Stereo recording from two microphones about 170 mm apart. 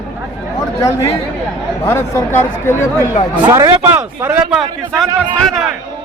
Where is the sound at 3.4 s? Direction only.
20° right (ahead or behind).